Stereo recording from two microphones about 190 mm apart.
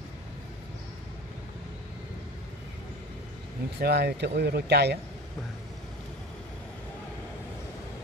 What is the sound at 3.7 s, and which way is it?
Speech, 55° right (ahead or behind).